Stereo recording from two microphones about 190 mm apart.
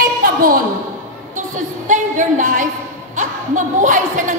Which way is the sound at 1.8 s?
40° right (ahead or behind).